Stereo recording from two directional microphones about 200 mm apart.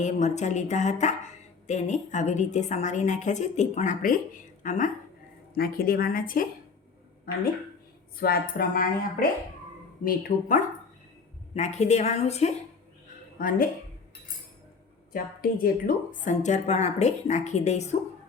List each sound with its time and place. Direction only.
0.0 s a woman's voice: 35° left (ahead or behind)
8.2 s a woman's voice: 45° left (ahead or behind)
11.5 s a woman's voice: 35° left (ahead or behind)
15.1 s a woman's voice: 45° left (ahead or behind)